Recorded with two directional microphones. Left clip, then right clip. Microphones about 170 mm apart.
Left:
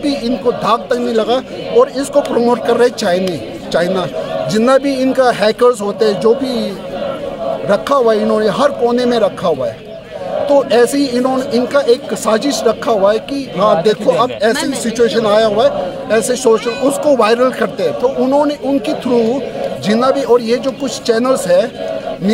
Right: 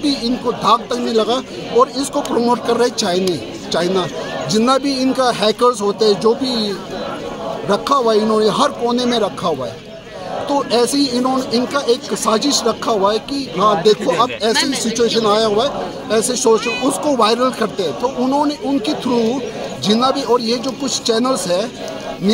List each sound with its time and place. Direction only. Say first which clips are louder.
0.0 s speech: left 3 dB; 5° left (ahead or behind)
7.7 s a man's voice: left 2 dB; 5° left (ahead or behind)